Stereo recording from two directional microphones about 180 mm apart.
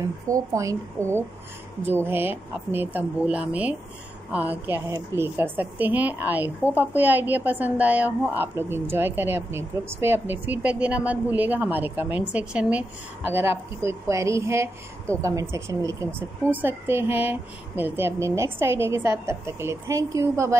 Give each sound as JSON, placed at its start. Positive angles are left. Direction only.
{"t": 0.3, "sound": "a woman's voice", "side_deg": -15}